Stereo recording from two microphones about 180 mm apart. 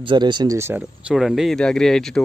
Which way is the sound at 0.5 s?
15° right (ahead or behind).